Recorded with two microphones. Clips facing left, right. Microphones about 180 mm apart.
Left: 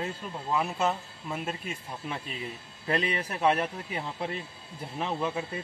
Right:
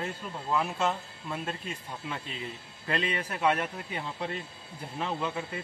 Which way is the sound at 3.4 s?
25° left (ahead or behind).